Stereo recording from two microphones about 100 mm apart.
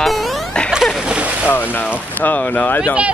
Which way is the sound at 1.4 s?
20° left (ahead or behind).